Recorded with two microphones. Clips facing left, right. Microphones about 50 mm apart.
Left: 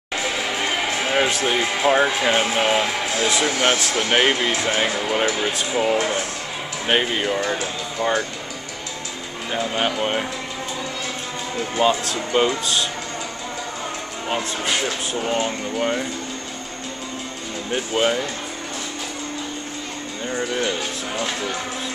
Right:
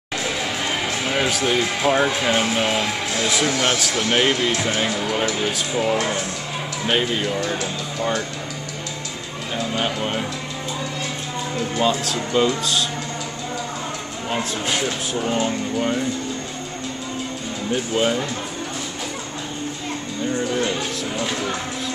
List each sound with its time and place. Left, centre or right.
0.8 s speech: left
9.5 s speech: left
11.7 s speech: left
14.3 s speech: centre
17.7 s speech: centre
20.3 s speech: centre